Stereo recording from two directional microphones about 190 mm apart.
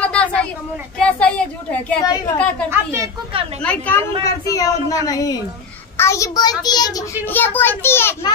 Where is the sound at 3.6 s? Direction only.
10° left (ahead or behind).